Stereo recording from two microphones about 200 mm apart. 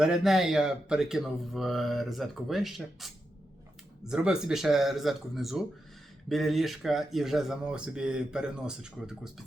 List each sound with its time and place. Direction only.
0.0 s speech: centre (ahead or behind)